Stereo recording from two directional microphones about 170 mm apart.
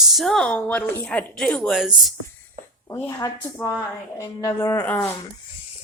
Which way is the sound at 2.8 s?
15° left (ahead or behind).